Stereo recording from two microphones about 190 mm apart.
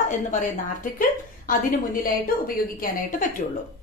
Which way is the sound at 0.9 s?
45° left (ahead or behind).